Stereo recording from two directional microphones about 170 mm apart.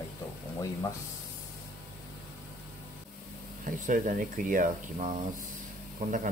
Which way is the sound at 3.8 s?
50° right (ahead or behind).